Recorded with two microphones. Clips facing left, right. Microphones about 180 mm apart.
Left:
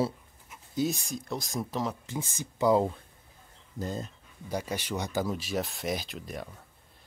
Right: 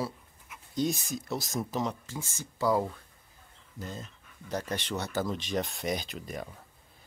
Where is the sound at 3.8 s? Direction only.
40° left (ahead or behind).